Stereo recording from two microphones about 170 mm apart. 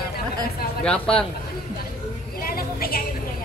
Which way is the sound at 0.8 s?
5° left (ahead or behind).